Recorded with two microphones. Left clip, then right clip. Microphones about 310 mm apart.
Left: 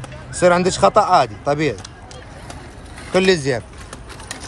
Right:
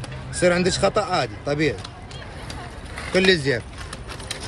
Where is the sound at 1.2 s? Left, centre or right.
Left.